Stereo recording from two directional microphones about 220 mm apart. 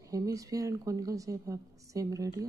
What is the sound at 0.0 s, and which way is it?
A woman's voice, 15° right (ahead or behind).